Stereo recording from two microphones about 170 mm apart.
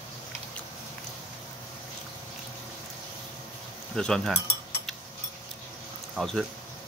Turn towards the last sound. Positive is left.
turn(degrees=0)  # may be behind; listen again after turning